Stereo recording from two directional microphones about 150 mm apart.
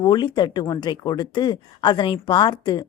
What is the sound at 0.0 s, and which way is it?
Speech, 30° left (ahead or behind).